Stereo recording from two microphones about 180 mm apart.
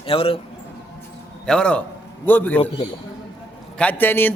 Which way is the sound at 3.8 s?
10° left (ahead or behind).